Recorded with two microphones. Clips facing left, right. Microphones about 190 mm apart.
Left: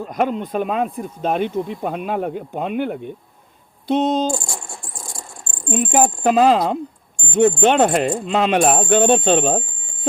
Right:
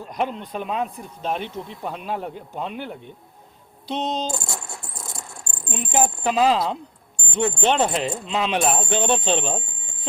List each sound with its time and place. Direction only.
0.1 s speech: 45° left (ahead or behind)
4.4 s coin: 25° right (ahead or behind)
4.8 s a sound: 25° right (ahead or behind)
5.7 s speech: 50° left (ahead or behind)